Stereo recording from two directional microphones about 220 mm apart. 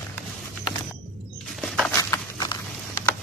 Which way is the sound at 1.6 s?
Centre (ahead or behind).